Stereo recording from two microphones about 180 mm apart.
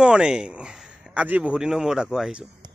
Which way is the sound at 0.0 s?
5° right (ahead or behind).